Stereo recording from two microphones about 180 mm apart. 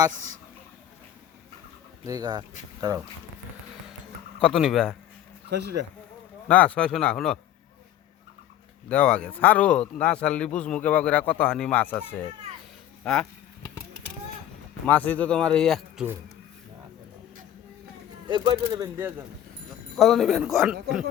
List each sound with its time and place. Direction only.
2.0 s speech: 20° right (ahead or behind)
4.4 s speech: centre (ahead or behind)
5.5 s speech: 70° right (ahead or behind)
6.5 s speech: 10° left (ahead or behind)
8.9 s a man's voice: 5° left (ahead or behind)
14.8 s speech: 10° left (ahead or behind)
18.3 s speech: 20° right (ahead or behind)
20.0 s speech: centre (ahead or behind)